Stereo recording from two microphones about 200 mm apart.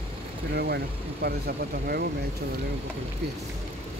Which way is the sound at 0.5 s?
55° right (ahead or behind).